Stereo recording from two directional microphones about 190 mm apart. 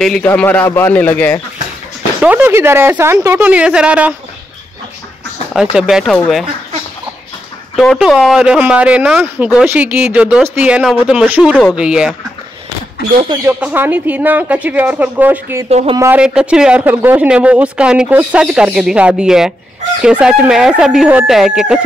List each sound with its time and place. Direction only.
0.0 s a man's voice: 5° left (ahead or behind)
2.2 s speech: 10° right (ahead or behind)
5.5 s speech: 5° right (ahead or behind)
7.7 s speech: centre (ahead or behind)
13.3 s speech: 15° right (ahead or behind)
15.7 s speech: 30° right (ahead or behind)
16.0 s speech: 5° right (ahead or behind)